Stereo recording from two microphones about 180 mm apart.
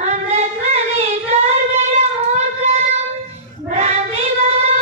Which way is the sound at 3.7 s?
40° right (ahead or behind).